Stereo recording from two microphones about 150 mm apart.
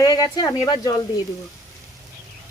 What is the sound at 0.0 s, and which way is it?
Speech, 25° left (ahead or behind).